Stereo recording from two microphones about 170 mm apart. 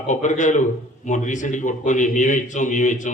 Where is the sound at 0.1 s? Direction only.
45° left (ahead or behind).